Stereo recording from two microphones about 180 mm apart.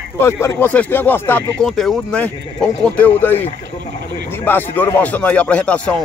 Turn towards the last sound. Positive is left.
turn(degrees=5)  # may be behind; listen again after turning